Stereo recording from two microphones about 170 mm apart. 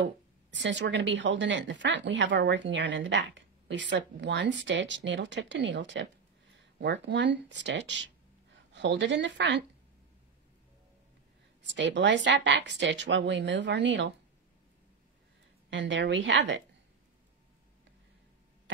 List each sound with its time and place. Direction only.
0.0 s a woman's voice: 90° right
11.6 s a woman's voice: 90° right
15.7 s a woman's voice: 90° right